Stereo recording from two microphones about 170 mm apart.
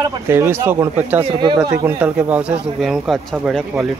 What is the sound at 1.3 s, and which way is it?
Speech, 30° right (ahead or behind).